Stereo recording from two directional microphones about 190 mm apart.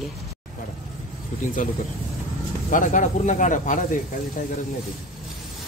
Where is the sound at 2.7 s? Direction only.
45° left (ahead or behind).